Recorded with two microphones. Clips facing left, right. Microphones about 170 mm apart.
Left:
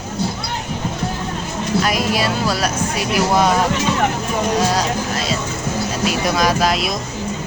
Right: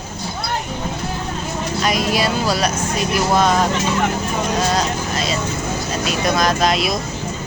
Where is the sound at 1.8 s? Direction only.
Centre (ahead or behind).